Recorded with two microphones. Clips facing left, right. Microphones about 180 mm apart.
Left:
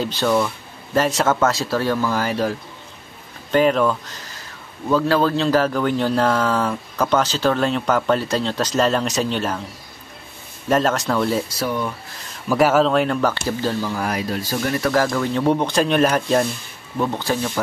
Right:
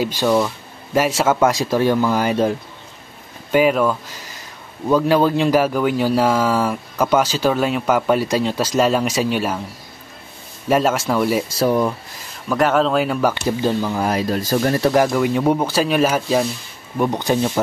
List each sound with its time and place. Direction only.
0.0 s speech: 10° right (ahead or behind)
3.5 s speech: 5° right (ahead or behind)
10.7 s speech: 10° right (ahead or behind)
11.5 s speech: 35° right (ahead or behind)
12.4 s speech: 5° left (ahead or behind); by 14.2 s 25° right (ahead or behind)
14.3 s speech: 40° right (ahead or behind)
14.8 s speech: 20° right (ahead or behind); by 16.4 s 5° right (ahead or behind)
17.0 s speech: 15° right (ahead or behind)